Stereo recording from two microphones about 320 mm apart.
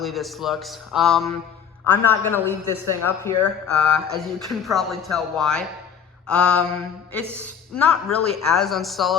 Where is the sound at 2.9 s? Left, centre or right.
Centre.